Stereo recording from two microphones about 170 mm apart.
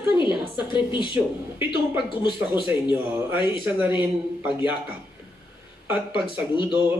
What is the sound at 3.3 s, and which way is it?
Speech, 30° left (ahead or behind).